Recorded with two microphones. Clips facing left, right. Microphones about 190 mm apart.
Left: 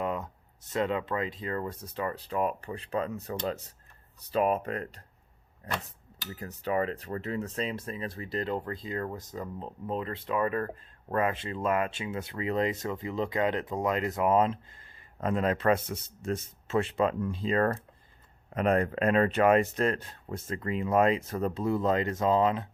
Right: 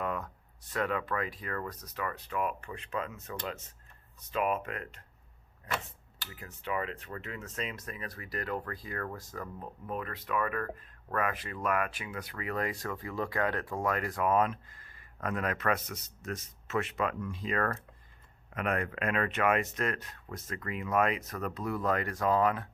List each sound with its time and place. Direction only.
0.0 s a sound: 20° left (ahead or behind)
0.7 s speech: 25° left (ahead or behind)
6.2 s speech: 40° left (ahead or behind); by 22.7 s 20° left (ahead or behind)